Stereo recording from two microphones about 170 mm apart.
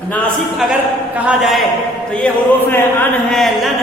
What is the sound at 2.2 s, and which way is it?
A man's voice, 10° left (ahead or behind).